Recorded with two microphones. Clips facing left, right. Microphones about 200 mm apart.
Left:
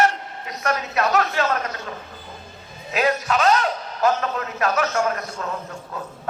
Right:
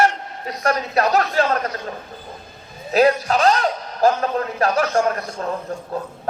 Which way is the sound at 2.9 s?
35° right (ahead or behind).